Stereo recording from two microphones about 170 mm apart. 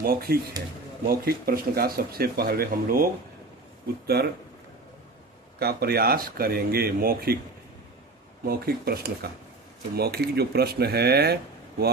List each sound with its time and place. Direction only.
0.0 s speech: 60° right (ahead or behind)
5.5 s speech: 65° right (ahead or behind)
8.4 s speech: 65° right (ahead or behind)